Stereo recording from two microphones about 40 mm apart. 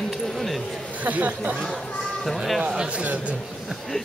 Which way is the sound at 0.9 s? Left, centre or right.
Right.